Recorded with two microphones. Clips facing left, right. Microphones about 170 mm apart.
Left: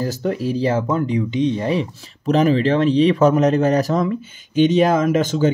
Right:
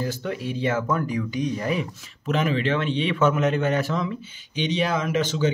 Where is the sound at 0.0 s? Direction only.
40° left (ahead or behind).